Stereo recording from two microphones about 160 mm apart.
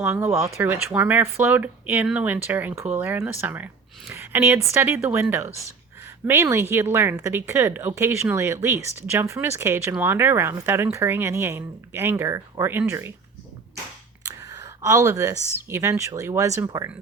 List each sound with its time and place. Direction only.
0.0 s speech: 15° right (ahead or behind)
14.3 s speech: 20° right (ahead or behind)